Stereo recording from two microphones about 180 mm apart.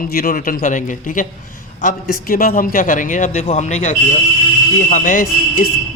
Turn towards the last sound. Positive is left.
turn(degrees=50)  # may be behind; listen again after turning